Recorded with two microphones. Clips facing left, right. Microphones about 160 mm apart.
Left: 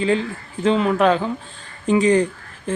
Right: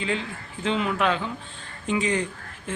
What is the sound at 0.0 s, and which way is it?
Speech, 35° left (ahead or behind).